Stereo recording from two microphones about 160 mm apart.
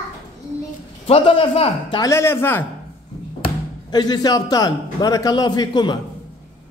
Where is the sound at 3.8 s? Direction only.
25° left (ahead or behind).